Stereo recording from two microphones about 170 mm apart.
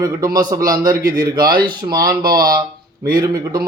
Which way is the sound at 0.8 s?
55° right (ahead or behind).